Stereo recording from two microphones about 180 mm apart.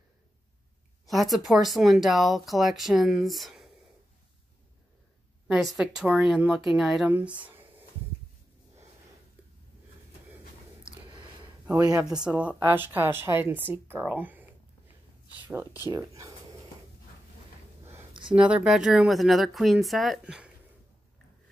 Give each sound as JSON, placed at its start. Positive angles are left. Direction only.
{"t": 1.0, "sound": "speech", "side_deg": 0}
{"t": 5.5, "sound": "speech", "side_deg": -5}
{"t": 7.3, "sound": "a sound", "side_deg": -10}
{"t": 11.1, "sound": "a sound", "side_deg": -25}
{"t": 11.6, "sound": "speech", "side_deg": -15}
{"t": 18.3, "sound": "speech", "side_deg": -5}